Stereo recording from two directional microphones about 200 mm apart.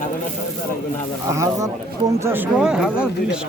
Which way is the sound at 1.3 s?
15° right (ahead or behind).